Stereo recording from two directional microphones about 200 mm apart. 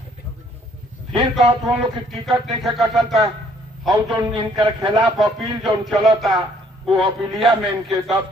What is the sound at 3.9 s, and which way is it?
A man's voice, 20° right (ahead or behind).